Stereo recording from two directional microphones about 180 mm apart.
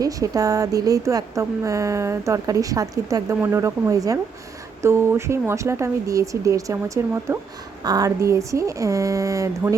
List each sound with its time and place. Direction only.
0.0 s speech: 20° right (ahead or behind)